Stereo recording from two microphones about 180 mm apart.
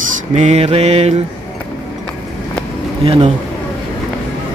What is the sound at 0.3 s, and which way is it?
Mantra, 35° right (ahead or behind).